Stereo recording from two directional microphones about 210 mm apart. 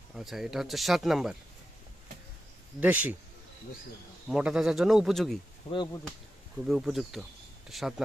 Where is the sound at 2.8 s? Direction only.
5° right (ahead or behind).